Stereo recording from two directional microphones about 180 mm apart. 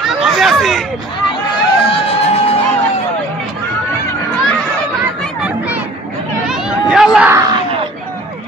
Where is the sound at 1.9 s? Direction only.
35° left (ahead or behind).